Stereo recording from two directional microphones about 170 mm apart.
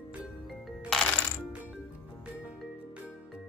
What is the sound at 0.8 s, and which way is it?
Music, 5° left (ahead or behind).